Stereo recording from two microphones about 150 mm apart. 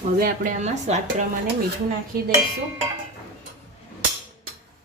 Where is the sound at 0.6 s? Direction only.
50° right (ahead or behind).